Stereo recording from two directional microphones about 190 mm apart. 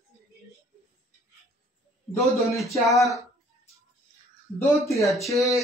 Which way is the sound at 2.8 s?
Centre (ahead or behind).